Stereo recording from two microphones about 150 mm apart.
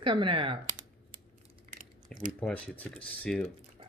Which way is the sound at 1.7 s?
60° right (ahead or behind).